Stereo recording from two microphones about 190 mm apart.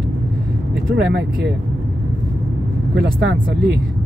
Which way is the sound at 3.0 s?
70° right (ahead or behind).